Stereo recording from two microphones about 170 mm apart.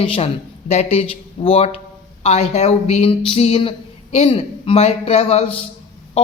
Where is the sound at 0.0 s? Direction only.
35° left (ahead or behind).